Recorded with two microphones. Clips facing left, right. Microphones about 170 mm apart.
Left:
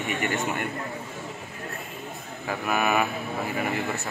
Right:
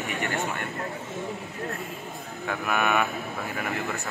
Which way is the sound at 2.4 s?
5° left (ahead or behind).